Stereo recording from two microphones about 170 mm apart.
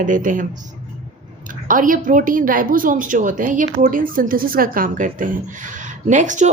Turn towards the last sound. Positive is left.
turn(degrees=-45)  # may be behind; listen again after turning